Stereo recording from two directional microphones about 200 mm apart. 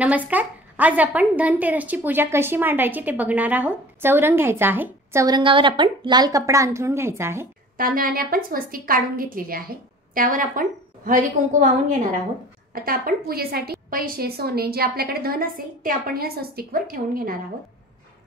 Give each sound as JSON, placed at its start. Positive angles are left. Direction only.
{"t": 0.0, "sound": "a woman's voice", "side_deg": -5}
{"t": 7.7, "sound": "a woman's voice", "side_deg": -45}
{"t": 12.8, "sound": "a woman's voice", "side_deg": -45}